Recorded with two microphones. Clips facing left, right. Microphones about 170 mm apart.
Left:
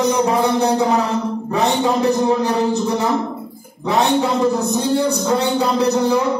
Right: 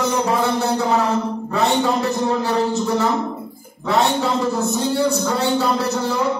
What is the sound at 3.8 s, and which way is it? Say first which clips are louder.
A man's voice: left 2 dB; 20° left (ahead or behind).